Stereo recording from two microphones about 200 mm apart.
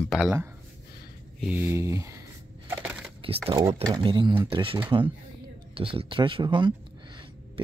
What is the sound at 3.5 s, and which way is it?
Speech, 15° right (ahead or behind).